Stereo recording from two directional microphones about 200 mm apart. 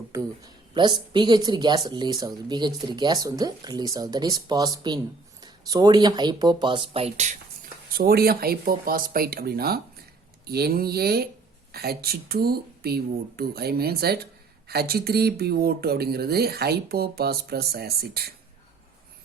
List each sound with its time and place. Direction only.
0.1 s speech: 15° right (ahead or behind); by 18.3 s 50° right (ahead or behind)